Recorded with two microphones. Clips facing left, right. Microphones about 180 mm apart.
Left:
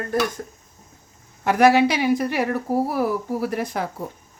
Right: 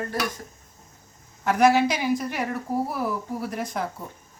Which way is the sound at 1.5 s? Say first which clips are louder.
Left 3 dB; 65° left (ahead or behind).